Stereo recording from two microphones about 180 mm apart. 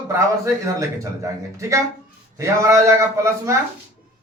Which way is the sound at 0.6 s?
15° right (ahead or behind).